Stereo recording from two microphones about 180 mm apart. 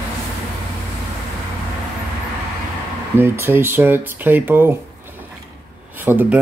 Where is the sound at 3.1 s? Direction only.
15° right (ahead or behind).